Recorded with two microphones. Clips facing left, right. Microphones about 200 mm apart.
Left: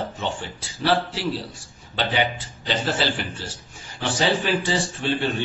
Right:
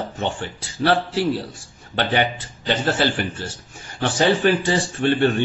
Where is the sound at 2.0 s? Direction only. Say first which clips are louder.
Right 3 dB; 55° right (ahead or behind).